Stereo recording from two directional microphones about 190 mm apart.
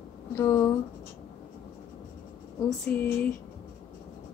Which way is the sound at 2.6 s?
10° left (ahead or behind).